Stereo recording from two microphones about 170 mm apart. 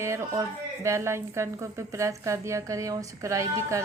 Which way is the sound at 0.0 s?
15° right (ahead or behind).